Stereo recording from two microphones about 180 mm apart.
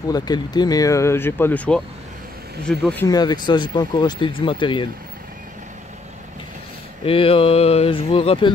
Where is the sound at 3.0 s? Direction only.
20° left (ahead or behind).